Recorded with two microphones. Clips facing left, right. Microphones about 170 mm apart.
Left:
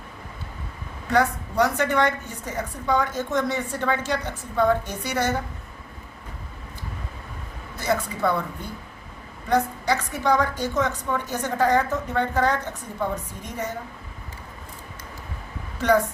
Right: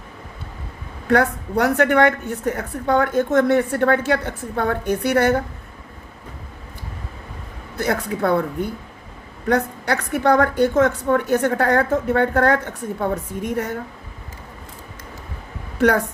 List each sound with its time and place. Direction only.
1.0 s a woman's voice: 60° right (ahead or behind)
7.8 s a woman's voice: 60° right (ahead or behind)
9.5 s a woman's voice: 60° right (ahead or behind)